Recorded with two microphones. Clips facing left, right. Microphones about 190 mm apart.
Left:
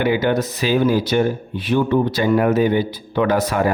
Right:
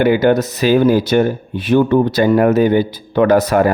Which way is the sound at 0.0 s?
45° right (ahead or behind).